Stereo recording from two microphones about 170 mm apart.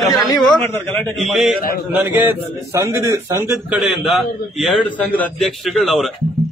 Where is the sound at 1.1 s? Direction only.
Centre (ahead or behind).